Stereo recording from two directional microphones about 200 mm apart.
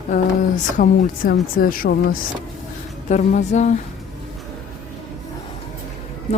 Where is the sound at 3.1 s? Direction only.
40° left (ahead or behind).